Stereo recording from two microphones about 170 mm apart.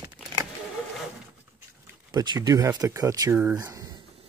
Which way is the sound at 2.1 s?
25° right (ahead or behind).